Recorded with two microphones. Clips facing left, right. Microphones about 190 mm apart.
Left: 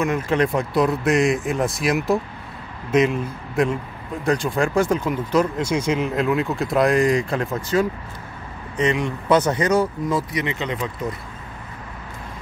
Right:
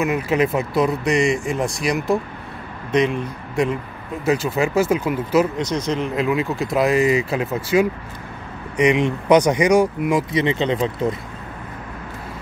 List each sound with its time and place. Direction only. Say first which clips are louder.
0.0 s speech: right 1 dB; 5° right (ahead or behind)
5.6 s speech: left 1 dB; 10° left (ahead or behind); by 10.2 s 15° right (ahead or behind)
10.3 s speech: right 6 dB; 30° right (ahead or behind)